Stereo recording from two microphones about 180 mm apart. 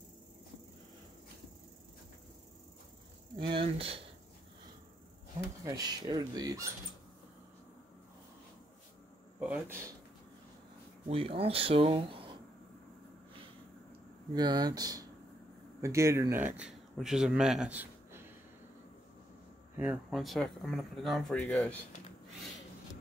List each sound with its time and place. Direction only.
3.5 s speech: 30° right (ahead or behind)
5.8 s speech: 20° right (ahead or behind)
9.5 s speech: 15° right (ahead or behind)
11.1 s speech: 30° right (ahead or behind)
14.3 s speech: 20° right (ahead or behind)
19.8 s speech: 5° right (ahead or behind)